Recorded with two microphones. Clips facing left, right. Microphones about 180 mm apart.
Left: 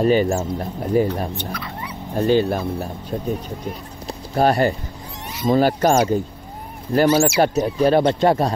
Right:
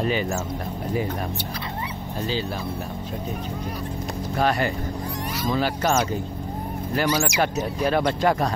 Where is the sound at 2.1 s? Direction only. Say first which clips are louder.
Left 11 dB; 55° left (ahead or behind).